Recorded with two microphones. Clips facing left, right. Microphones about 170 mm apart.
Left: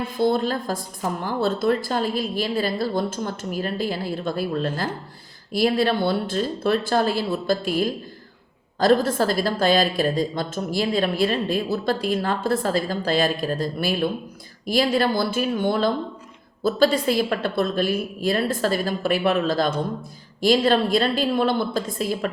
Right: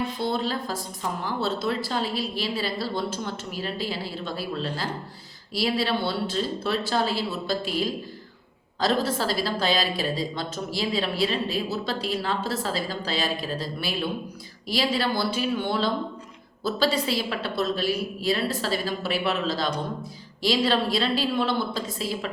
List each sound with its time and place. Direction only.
0.2 s a woman's voice: 50° left (ahead or behind)